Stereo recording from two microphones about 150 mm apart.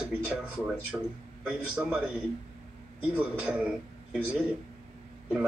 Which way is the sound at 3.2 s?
10° right (ahead or behind).